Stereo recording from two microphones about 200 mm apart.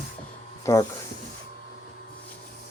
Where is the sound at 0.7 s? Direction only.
15° left (ahead or behind).